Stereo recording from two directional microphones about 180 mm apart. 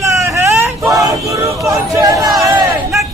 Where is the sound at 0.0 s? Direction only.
15° right (ahead or behind).